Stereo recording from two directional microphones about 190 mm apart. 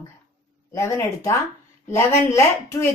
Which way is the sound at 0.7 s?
15° left (ahead or behind).